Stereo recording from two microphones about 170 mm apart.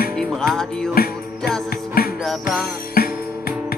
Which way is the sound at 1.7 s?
60° left (ahead or behind).